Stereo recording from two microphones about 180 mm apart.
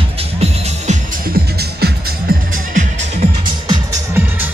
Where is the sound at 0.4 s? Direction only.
35° right (ahead or behind).